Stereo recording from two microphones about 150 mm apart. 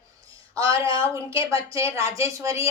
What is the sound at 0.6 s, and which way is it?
Speech, 35° left (ahead or behind).